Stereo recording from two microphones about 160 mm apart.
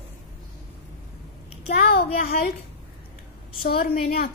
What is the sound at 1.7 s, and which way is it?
Child singing, 75° left (ahead or behind).